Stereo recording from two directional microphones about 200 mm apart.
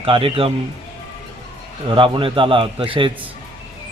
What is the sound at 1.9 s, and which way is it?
Speech, 25° right (ahead or behind).